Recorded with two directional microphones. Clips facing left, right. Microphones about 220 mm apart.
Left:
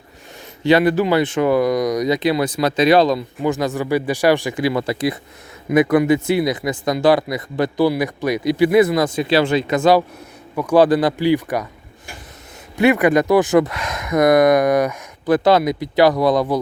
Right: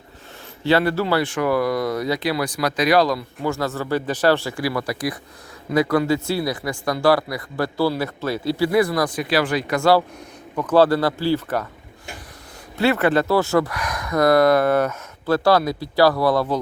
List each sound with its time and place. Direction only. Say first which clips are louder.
0.6 s speech: left 4 dB; 15° left (ahead or behind)
12.7 s speech: left 4 dB; 15° left (ahead or behind)